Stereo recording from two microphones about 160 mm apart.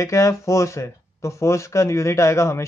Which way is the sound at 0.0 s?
20° left (ahead or behind).